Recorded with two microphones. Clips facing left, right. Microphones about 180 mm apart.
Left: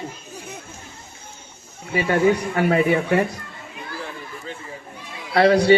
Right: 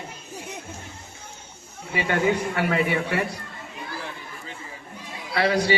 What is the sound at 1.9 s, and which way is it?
Speech, 35° left (ahead or behind).